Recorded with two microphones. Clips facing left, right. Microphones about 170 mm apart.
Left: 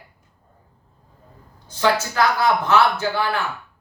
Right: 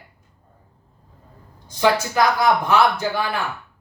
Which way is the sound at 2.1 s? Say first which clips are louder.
Right 1 dB; 15° right (ahead or behind).